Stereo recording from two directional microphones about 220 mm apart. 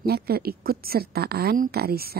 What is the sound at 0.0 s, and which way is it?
A woman's voice, 45° right (ahead or behind).